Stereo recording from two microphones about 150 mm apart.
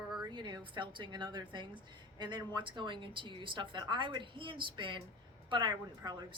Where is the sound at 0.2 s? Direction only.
30° right (ahead or behind).